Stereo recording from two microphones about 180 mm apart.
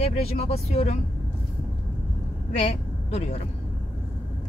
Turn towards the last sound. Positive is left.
turn(degrees=35)  # may be behind; listen again after turning